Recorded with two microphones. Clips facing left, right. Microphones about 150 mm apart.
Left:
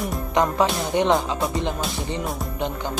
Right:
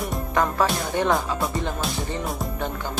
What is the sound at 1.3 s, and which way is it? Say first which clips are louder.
Music: left 2 dB; centre (ahead or behind).